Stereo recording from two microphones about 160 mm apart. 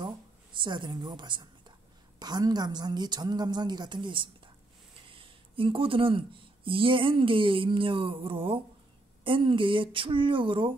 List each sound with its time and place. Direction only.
0.6 s a woman's voice: 30° right (ahead or behind)